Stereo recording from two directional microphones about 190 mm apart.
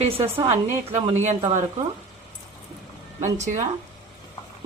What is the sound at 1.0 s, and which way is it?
Speech, 35° right (ahead or behind).